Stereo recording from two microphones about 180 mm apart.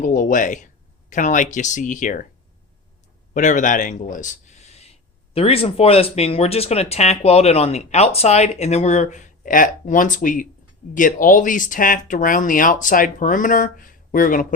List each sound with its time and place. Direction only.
0.0 s speech: 45° left (ahead or behind)
3.3 s speech: 45° left (ahead or behind)